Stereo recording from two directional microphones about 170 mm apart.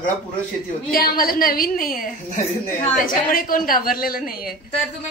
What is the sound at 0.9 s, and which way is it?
A woman's voice, 60° left (ahead or behind).